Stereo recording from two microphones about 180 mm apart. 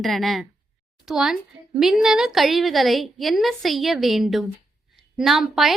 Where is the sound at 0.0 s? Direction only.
Centre (ahead or behind).